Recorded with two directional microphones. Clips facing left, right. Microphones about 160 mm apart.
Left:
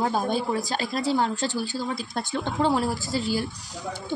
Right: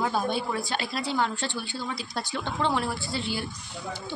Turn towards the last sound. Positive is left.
turn(degrees=40)  # may be behind; listen again after turning